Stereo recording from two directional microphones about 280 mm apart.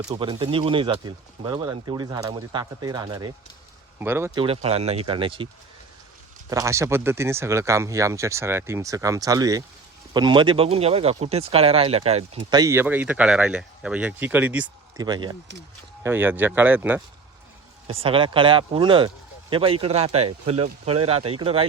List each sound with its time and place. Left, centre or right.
0.1 s speech: centre
4.4 s speech: right
6.5 s speech: centre
17.8 s speech: centre